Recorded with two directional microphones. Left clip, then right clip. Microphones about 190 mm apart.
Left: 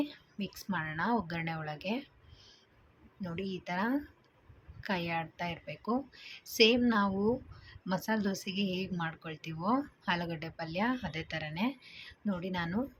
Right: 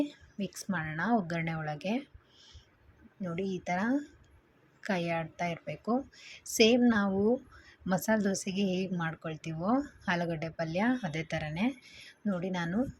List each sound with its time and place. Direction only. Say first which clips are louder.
0.0 s a woman's voice: right 2 dB; 15° right (ahead or behind)